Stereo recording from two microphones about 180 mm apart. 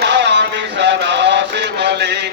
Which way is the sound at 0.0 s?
75° right (ahead or behind).